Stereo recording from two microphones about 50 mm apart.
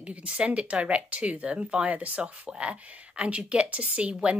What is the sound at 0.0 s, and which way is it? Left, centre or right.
Speech, right.